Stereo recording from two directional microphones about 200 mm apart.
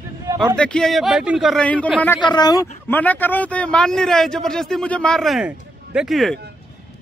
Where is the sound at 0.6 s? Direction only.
5° left (ahead or behind).